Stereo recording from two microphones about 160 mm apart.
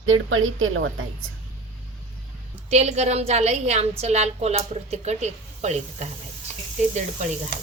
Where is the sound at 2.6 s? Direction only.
45° right (ahead or behind).